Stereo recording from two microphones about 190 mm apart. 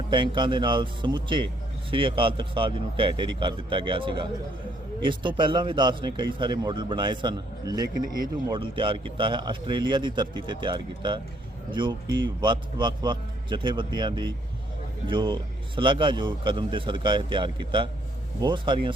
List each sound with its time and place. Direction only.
0.1 s speech: 25° right (ahead or behind)